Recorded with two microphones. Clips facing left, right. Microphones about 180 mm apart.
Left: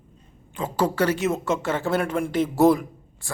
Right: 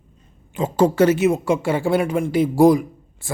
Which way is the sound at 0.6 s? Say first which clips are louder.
Right 7 dB; 25° right (ahead or behind).